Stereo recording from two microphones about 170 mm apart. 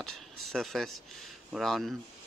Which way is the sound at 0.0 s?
Centre (ahead or behind).